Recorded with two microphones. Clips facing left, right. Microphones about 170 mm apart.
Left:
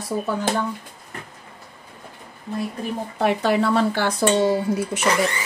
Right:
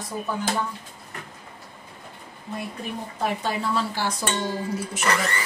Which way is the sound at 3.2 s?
75° left (ahead or behind).